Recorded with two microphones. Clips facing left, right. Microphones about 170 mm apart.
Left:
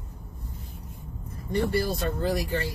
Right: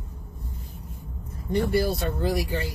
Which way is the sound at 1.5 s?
10° right (ahead or behind).